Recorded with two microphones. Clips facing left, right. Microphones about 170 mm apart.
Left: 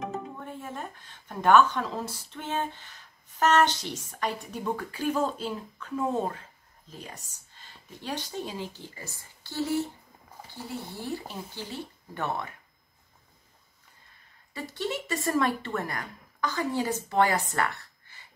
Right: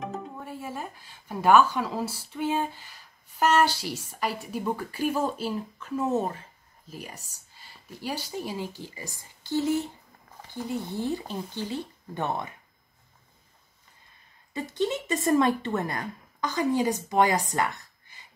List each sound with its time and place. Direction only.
0.0 s speech: centre (ahead or behind); by 12.4 s 20° right (ahead or behind)
14.5 s speech: 20° right (ahead or behind)